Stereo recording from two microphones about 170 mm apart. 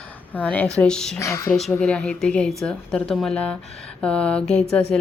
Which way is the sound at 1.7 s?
5° left (ahead or behind).